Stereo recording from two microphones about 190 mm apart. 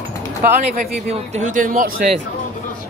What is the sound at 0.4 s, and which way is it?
Speech, 40° right (ahead or behind).